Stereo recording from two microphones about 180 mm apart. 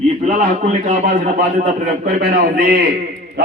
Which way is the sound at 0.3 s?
45° right (ahead or behind).